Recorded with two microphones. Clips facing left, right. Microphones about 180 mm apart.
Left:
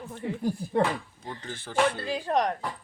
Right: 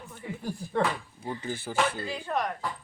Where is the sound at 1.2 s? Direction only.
10° right (ahead or behind).